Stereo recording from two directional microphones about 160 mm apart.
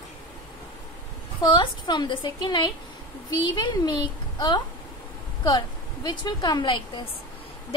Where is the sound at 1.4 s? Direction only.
30° left (ahead or behind).